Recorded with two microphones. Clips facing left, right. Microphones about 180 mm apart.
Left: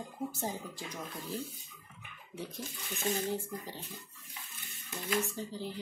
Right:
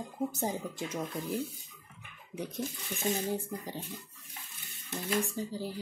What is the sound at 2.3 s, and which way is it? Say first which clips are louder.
Speech: right 5 dB; 20° right (ahead or behind).